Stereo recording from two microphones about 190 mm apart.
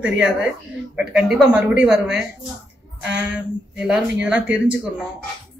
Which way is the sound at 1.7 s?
65° right (ahead or behind).